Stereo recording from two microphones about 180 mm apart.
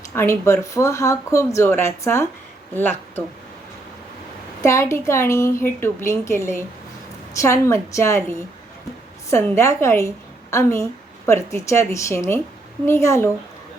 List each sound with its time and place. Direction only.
0.1 s speech: 15° left (ahead or behind)
4.6 s speech: 15° left (ahead or behind)